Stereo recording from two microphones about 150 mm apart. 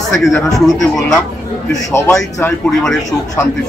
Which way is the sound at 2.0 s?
20° left (ahead or behind).